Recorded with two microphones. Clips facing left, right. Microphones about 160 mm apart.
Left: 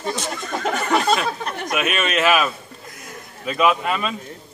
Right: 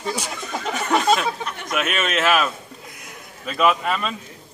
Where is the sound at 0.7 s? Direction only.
Centre (ahead or behind).